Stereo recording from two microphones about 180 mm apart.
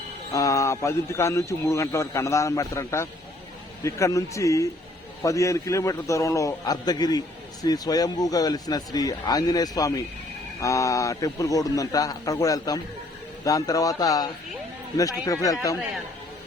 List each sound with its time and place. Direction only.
0.3 s a man's voice: 20° left (ahead or behind)